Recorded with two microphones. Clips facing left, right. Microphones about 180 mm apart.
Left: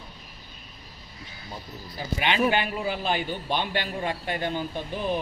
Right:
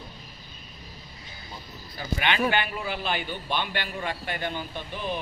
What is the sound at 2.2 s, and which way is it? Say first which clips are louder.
A man's voice: left 2 dB; 35° left (ahead or behind).